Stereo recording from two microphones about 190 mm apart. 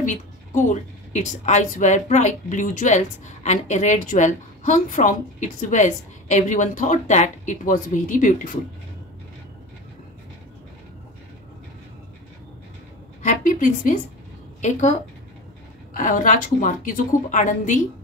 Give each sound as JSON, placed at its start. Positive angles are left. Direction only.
{"t": 0.0, "sound": "a woman's voice", "side_deg": 40}
{"t": 13.2, "sound": "a sound", "side_deg": 40}
{"t": 14.6, "sound": "a woman's voice", "side_deg": 40}